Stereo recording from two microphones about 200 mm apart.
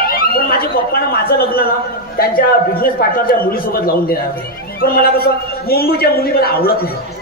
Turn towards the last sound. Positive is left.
turn(degrees=50)  # may be behind; listen again after turning